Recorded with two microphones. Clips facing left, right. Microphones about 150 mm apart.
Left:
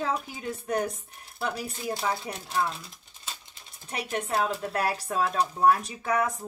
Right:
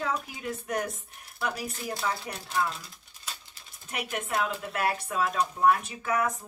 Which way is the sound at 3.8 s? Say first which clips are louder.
Left 2 dB; 30° left (ahead or behind).